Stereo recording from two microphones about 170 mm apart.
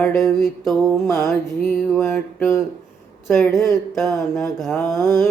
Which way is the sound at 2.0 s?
15° left (ahead or behind).